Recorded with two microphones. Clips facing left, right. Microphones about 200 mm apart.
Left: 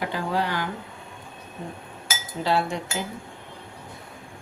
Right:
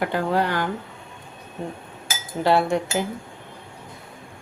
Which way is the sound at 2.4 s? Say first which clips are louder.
Right 5 dB; 55° right (ahead or behind).